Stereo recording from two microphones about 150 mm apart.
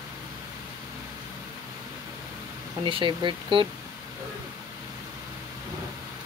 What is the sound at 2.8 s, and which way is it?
Speech, 35° right (ahead or behind).